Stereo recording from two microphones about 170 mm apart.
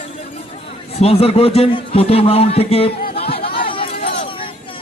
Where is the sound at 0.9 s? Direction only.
35° left (ahead or behind).